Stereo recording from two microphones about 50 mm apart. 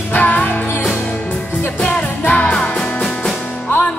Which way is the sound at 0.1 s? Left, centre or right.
Left.